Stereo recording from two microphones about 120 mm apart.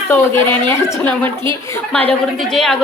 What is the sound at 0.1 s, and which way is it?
Speech, 20° left (ahead or behind).